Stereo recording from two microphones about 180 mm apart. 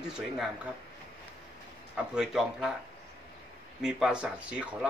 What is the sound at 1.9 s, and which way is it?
Speech, 5° right (ahead or behind).